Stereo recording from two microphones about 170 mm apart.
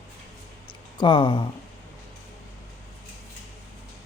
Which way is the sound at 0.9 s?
30° left (ahead or behind).